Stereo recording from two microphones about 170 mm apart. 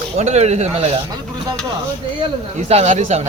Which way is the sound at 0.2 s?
40° right (ahead or behind).